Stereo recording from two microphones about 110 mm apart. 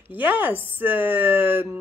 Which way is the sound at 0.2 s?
15° right (ahead or behind).